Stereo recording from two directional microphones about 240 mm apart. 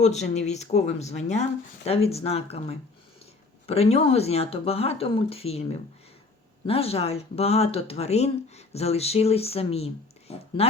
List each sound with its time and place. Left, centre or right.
0.0 s speech: left